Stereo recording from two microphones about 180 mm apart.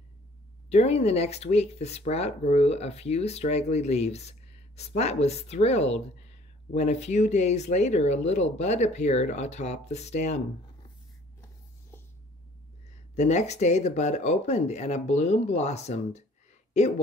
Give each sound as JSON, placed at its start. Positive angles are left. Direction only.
{"t": 0.7, "sound": "speech", "side_deg": 35}
{"t": 11.9, "sound": "a sound", "side_deg": 15}
{"t": 13.1, "sound": "speech", "side_deg": 40}